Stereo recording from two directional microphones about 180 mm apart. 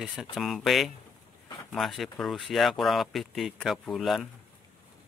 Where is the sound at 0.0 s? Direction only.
Centre (ahead or behind).